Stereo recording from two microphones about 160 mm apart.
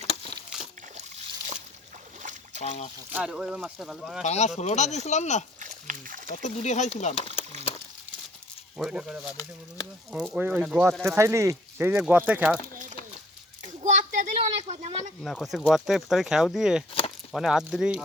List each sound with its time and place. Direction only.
0.0 s a sound: 40° left (ahead or behind)
2.6 s speech: 40° left (ahead or behind)
3.1 s speech: 5° right (ahead or behind)
4.2 s speech: 45° left (ahead or behind)
5.5 s a sound: 55° right (ahead or behind)
6.3 s speech: 45° left (ahead or behind)
8.8 s speech: centre (ahead or behind)
13.8 s a sound: 50° right (ahead or behind)
15.2 s speech: centre (ahead or behind)